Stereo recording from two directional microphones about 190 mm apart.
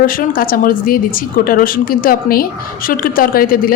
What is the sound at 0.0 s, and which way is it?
Speech, 50° left (ahead or behind).